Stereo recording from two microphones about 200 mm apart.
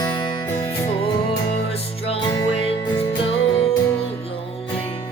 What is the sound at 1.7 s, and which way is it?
Music, 30° left (ahead or behind).